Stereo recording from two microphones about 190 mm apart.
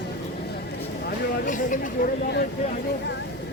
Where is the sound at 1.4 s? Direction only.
45° left (ahead or behind).